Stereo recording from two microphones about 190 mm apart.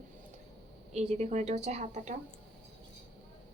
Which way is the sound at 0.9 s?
35° right (ahead or behind).